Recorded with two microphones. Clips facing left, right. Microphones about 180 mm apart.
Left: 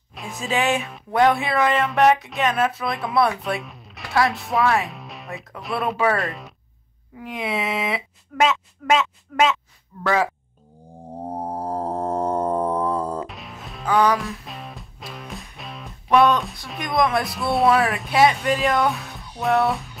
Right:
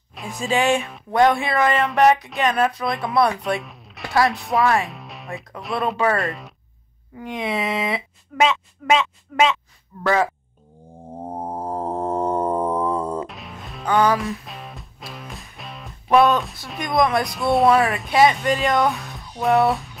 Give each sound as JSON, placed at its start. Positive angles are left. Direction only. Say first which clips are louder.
{"t": 0.1, "sound": "music", "louder": "right 2 dB", "side_deg": 0}
{"t": 10.0, "sound": "speech", "louder": "right 1 dB", "side_deg": 5}
{"t": 11.2, "sound": "music", "louder": "left 1 dB", "side_deg": 35}
{"t": 13.3, "sound": "music", "louder": "right 1 dB", "side_deg": 0}